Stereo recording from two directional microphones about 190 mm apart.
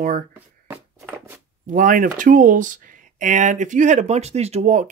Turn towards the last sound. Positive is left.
turn(degrees=-40)  # may be behind; listen again after turning